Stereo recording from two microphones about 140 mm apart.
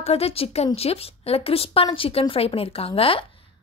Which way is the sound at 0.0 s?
45° left (ahead or behind).